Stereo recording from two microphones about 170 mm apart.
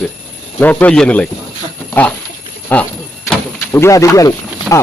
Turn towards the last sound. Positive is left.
turn(degrees=-5)  # may be behind; listen again after turning